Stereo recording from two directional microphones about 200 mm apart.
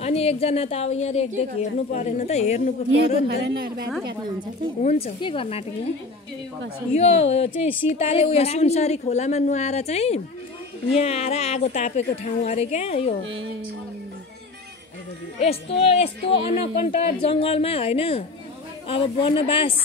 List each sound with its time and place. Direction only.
0.0 s a woman's voice: 30° left (ahead or behind)
3.3 s a woman's voice: 50° right (ahead or behind)
4.8 s speech: 30° left (ahead or behind)
6.9 s a woman's voice: 30° left (ahead or behind)
15.8 s speech: 30° left (ahead or behind)